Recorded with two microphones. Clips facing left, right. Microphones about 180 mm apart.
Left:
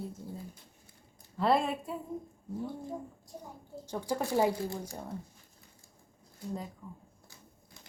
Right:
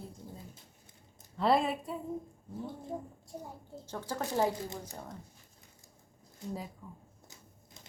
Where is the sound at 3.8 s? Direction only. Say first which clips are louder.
Left 4 dB; 15° left (ahead or behind).